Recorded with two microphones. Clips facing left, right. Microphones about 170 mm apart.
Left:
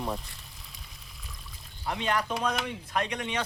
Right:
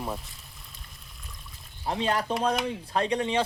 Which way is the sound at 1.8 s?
30° right (ahead or behind).